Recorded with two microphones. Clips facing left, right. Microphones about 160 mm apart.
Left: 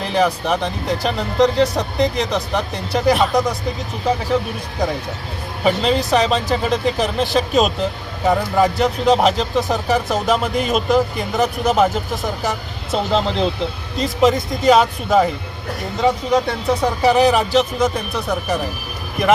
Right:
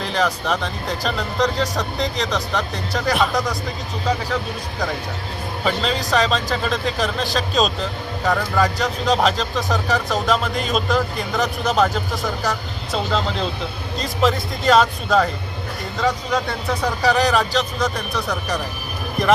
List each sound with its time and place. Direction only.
0.1 s speech: 15° left (ahead or behind)
5.6 s speech: 15° left (ahead or behind)